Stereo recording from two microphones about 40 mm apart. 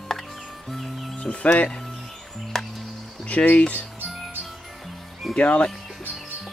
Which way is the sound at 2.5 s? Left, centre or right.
Centre.